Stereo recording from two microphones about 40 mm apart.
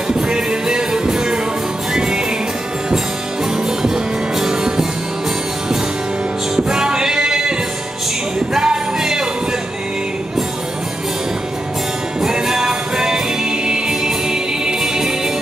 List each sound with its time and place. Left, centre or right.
0.3 s music: right
3.8 s music: centre
6.5 s music: centre
8.5 s music: centre
12.2 s music: centre